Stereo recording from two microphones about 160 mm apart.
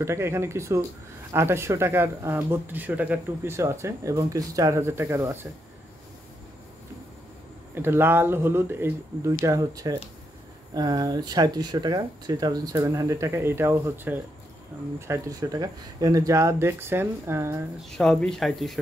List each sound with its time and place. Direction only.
0.0 s speech: 15° right (ahead or behind)
7.7 s speech: 15° right (ahead or behind)
17.8 s speech: 5° left (ahead or behind)